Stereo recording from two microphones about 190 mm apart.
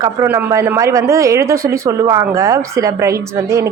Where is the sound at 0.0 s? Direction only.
15° right (ahead or behind).